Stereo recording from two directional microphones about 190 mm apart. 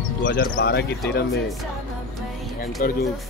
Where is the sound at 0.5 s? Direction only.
55° left (ahead or behind).